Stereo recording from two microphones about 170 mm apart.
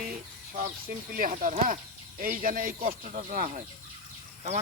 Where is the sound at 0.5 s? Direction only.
55° right (ahead or behind).